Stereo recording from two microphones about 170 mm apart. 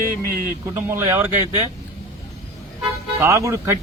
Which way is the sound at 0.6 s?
15° right (ahead or behind).